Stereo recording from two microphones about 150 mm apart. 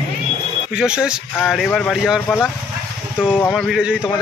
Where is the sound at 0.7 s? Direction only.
5° right (ahead or behind).